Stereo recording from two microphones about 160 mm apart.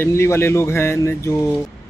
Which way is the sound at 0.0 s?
15° left (ahead or behind).